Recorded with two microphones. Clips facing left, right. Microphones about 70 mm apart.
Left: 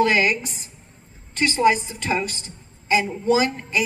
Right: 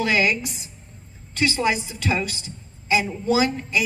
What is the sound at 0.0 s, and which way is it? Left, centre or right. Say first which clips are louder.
A woman's voice: left 2 dB; left.